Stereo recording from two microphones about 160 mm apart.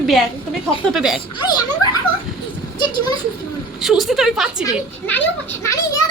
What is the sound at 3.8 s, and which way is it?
Speech, centre (ahead or behind).